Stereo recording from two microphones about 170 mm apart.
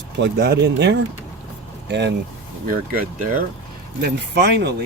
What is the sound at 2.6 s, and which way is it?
Speech, 55° right (ahead or behind).